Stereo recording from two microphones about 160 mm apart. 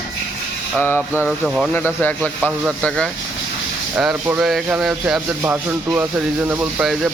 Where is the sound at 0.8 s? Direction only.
15° left (ahead or behind).